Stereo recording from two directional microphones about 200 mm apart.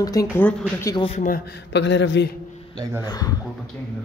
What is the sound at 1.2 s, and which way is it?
A man's voice, 50° left (ahead or behind).